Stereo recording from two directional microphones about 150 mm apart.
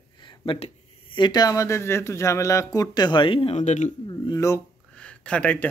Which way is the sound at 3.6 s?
50° left (ahead or behind).